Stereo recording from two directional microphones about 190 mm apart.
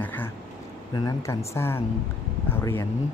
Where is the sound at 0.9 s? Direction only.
20° left (ahead or behind).